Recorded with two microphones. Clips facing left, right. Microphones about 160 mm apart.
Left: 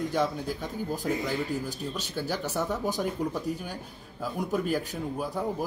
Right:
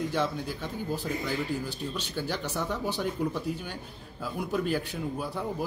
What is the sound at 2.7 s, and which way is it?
Speech, 40° left (ahead or behind).